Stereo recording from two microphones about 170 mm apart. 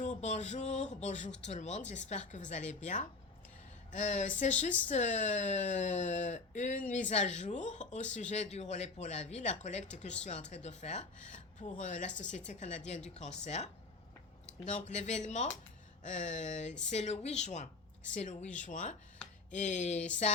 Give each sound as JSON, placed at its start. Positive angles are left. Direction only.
{"t": 0.0, "sound": "speech", "side_deg": 45}